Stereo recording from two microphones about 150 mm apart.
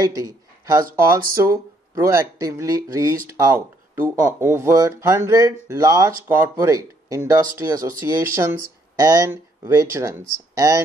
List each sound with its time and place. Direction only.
0.0 s speech: 25° right (ahead or behind)